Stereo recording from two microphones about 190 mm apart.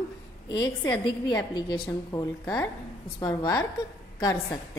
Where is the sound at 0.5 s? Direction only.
20° left (ahead or behind).